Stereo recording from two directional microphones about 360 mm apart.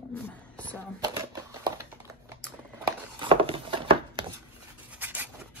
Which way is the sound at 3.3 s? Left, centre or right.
Centre.